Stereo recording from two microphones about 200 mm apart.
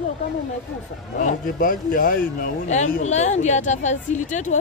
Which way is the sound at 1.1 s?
40° left (ahead or behind).